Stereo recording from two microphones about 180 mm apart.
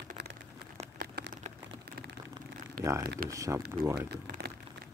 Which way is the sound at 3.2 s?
20° right (ahead or behind).